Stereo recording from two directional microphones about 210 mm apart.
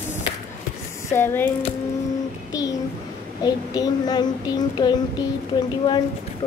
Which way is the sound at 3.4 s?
20° left (ahead or behind).